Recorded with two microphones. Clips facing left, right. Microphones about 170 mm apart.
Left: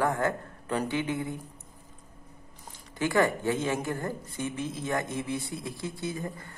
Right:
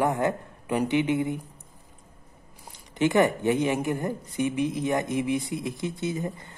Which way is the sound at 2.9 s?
20° right (ahead or behind).